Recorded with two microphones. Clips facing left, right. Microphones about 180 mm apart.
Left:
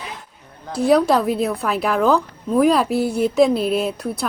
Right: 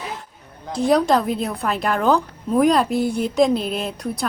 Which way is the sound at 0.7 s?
5° left (ahead or behind).